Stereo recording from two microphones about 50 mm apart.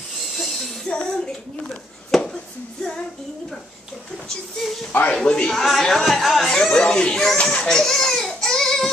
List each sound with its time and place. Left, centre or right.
0.3 s a sound: centre
0.8 s speech: centre
4.6 s speech: centre
5.0 s speech: centre
7.5 s baby cry: centre